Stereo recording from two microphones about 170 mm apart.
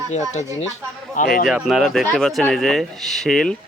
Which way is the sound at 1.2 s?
60° left (ahead or behind).